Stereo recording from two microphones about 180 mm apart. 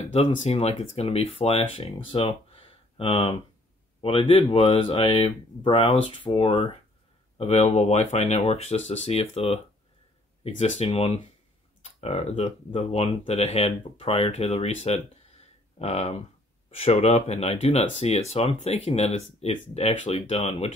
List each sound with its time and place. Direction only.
0.1 s speech: 35° left (ahead or behind)